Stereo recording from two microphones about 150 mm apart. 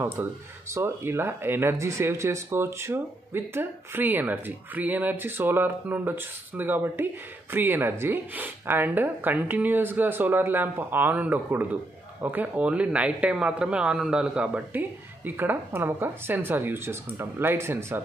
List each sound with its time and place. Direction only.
0.0 s speech: 15° right (ahead or behind)